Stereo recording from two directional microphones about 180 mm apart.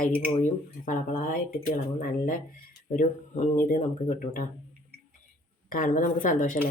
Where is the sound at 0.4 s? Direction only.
45° left (ahead or behind).